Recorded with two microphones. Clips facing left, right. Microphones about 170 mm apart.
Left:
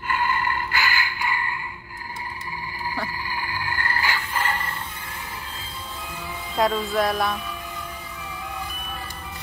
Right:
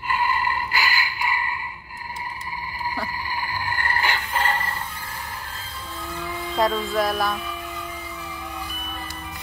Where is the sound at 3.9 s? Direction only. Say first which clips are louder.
Right 2 dB; 25° right (ahead or behind).